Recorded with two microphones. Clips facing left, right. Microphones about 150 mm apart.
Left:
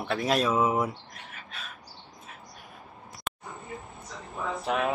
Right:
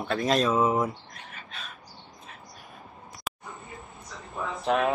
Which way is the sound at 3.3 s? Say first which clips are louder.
Even; centre (ahead or behind).